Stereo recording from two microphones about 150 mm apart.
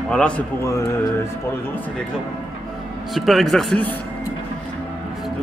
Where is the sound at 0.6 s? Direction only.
20° left (ahead or behind).